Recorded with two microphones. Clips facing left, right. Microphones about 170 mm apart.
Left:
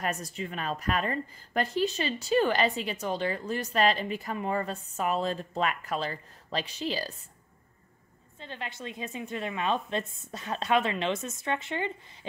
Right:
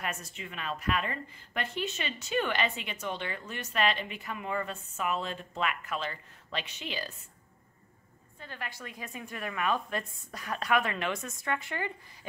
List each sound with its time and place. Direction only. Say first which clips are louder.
0.0 s a woman's voice: left 6 dB; 40° left (ahead or behind)
8.4 s a woman's voice: left 3 dB; 20° left (ahead or behind)